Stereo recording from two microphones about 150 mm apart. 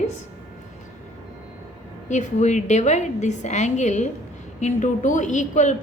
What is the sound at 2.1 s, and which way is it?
A woman's voice, 50° left (ahead or behind).